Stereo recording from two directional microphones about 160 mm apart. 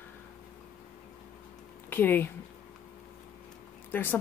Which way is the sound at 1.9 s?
10° left (ahead or behind).